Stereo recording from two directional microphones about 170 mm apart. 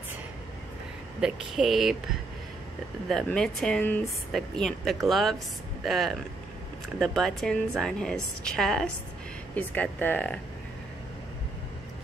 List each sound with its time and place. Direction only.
1.2 s a woman's voice: centre (ahead or behind)
3.1 s a woman's voice: 5° left (ahead or behind)